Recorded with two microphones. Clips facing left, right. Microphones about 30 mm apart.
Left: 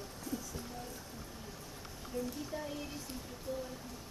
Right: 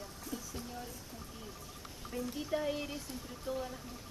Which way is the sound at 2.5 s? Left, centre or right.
Right.